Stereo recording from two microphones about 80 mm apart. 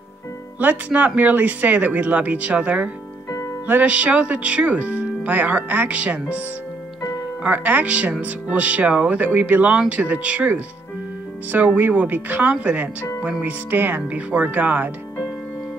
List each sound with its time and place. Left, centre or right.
0.6 s speech: right
7.4 s speech: right